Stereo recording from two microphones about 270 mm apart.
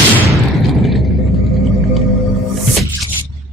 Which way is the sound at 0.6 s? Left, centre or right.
Centre.